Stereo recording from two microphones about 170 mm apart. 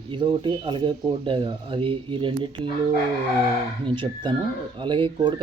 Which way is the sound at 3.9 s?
30° right (ahead or behind).